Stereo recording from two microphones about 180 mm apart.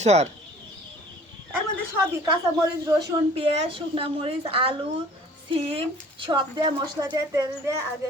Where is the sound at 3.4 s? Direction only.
30° right (ahead or behind).